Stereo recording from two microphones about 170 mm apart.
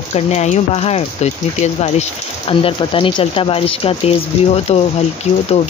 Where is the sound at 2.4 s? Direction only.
30° left (ahead or behind).